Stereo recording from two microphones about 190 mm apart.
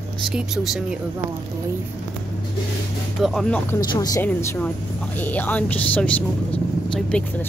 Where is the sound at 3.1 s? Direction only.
Centre (ahead or behind).